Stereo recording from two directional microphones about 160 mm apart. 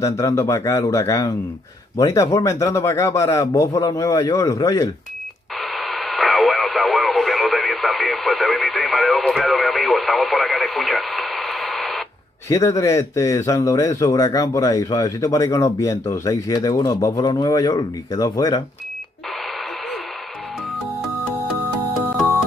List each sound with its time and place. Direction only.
0.0 s a man's voice: 20° left (ahead or behind)
5.6 s radio: centre (ahead or behind)
12.4 s a man's voice: 20° left (ahead or behind)